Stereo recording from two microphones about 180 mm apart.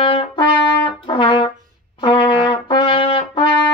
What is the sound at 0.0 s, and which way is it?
Trumpet, 30° left (ahead or behind).